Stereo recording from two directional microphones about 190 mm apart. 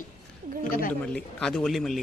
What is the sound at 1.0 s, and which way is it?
Speech, 5° left (ahead or behind).